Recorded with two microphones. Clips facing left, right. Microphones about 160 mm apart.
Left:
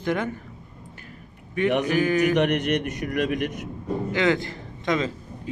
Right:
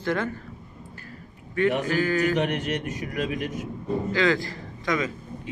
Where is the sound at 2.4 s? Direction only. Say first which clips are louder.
Left 4 dB; 75° left (ahead or behind).